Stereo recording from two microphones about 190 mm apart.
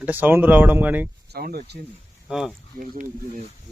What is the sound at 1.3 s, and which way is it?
Speech, 55° right (ahead or behind).